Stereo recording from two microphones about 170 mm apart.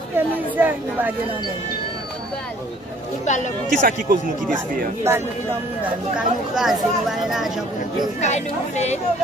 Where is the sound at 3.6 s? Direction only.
55° right (ahead or behind).